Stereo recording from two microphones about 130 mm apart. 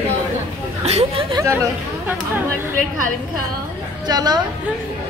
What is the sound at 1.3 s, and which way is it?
Chatter, 20° right (ahead or behind).